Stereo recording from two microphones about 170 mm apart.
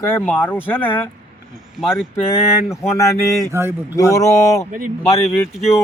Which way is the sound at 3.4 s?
15° right (ahead or behind).